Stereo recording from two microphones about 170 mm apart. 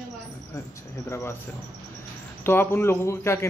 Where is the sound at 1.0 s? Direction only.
15° left (ahead or behind).